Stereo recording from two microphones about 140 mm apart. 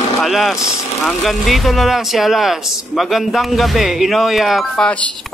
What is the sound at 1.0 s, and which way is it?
Speech, centre (ahead or behind).